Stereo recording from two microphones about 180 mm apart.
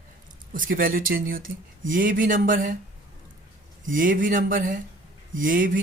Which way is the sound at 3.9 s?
50° right (ahead or behind).